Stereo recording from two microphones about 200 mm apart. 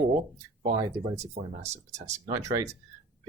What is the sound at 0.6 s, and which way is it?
Speech, 30° right (ahead or behind).